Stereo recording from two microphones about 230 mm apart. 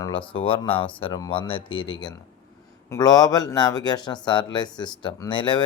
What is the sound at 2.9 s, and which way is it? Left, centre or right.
Speech, centre.